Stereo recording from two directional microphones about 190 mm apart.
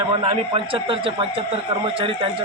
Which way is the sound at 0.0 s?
30° right (ahead or behind).